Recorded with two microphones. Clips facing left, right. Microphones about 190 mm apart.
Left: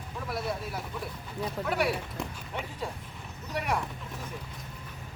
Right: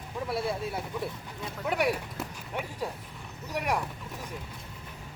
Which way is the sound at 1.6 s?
5° right (ahead or behind).